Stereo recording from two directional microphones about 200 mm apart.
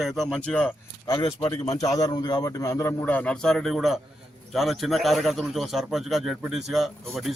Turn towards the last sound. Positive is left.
turn(degrees=0)  # may be behind; listen again after turning